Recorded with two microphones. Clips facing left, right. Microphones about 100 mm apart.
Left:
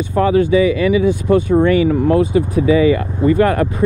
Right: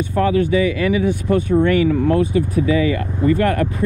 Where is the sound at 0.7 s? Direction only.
20° left (ahead or behind).